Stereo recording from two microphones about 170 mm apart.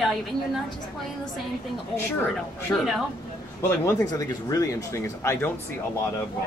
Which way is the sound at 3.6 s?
20° left (ahead or behind).